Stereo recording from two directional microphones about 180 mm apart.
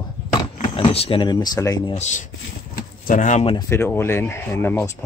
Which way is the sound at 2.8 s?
50° left (ahead or behind).